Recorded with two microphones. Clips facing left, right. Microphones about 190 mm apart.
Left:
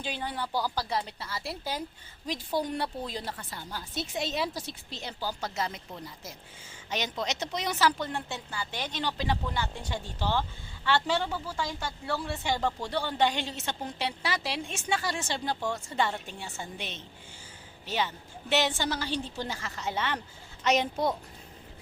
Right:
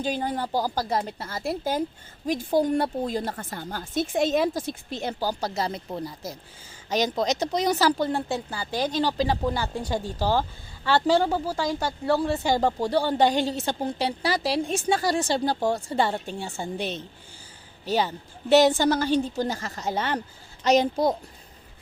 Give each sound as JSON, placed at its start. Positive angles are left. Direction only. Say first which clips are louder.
{"t": 0.0, "sound": "a woman's voice", "louder": "right 7 dB", "side_deg": -45}